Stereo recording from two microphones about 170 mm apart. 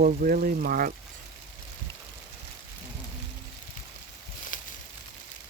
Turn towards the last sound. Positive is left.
turn(degrees=50)  # may be behind; listen again after turning